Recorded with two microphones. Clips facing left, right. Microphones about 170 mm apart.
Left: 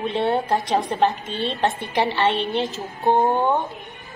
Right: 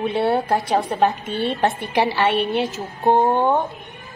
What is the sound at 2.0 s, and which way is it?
Speech, 20° left (ahead or behind).